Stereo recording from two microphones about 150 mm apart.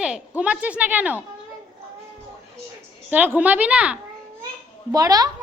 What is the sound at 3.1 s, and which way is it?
Speech, 10° right (ahead or behind).